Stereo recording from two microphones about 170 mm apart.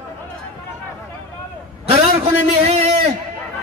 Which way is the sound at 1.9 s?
40° right (ahead or behind).